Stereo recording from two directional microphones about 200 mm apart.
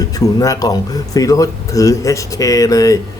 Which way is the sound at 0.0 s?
20° left (ahead or behind).